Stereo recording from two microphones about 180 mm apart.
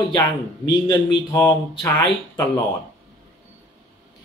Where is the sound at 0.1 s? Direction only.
20° left (ahead or behind).